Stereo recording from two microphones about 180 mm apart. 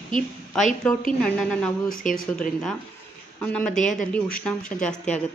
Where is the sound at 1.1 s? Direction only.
5° left (ahead or behind).